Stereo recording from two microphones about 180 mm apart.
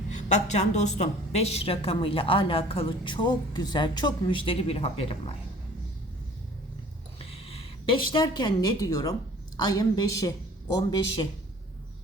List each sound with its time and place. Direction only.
0.1 s a woman's voice: 40° left (ahead or behind)
7.2 s a woman's voice: 35° left (ahead or behind)